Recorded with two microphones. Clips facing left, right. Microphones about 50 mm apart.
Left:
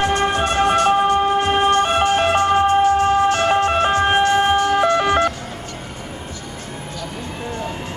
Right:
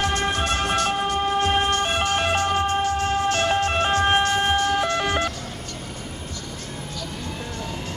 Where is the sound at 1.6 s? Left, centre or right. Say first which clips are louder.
Left 7 dB; left.